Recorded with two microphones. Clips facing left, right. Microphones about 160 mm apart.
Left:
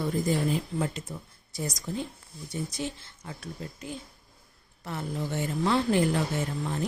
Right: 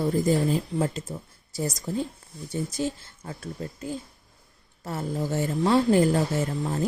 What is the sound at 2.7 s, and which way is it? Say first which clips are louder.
Speech: right 6 dB; 45° right (ahead or behind).